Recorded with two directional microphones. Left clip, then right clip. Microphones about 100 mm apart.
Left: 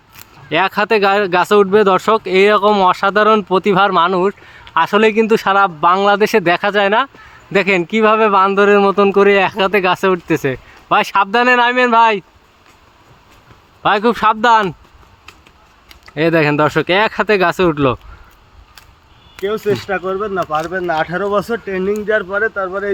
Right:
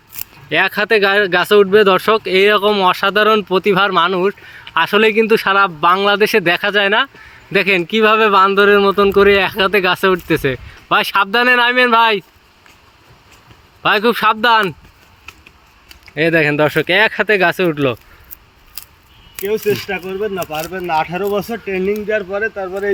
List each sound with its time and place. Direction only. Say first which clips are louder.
0.4 s speech: even; 30° left (ahead or behind); by 12.2 s 15° left (ahead or behind)
13.8 s speech: even; 15° left (ahead or behind)
16.1 s speech: even; 50° left (ahead or behind)
19.9 s speech: left 3 dB; 15° left (ahead or behind)
20.2 s speech: left 3 dB; 35° left (ahead or behind)
20.7 s speech: left 4 dB; 25° left (ahead or behind)
20.9 s speech: even; 35° left (ahead or behind)
21.6 s speech: even; 25° left (ahead or behind)